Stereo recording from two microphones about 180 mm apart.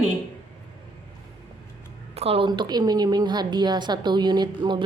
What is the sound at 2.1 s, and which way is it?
A woman's voice, 35° right (ahead or behind).